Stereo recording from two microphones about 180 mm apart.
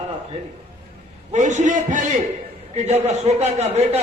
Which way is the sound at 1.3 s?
40° right (ahead or behind).